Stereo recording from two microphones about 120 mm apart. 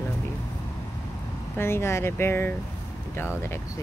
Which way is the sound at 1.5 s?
20° left (ahead or behind).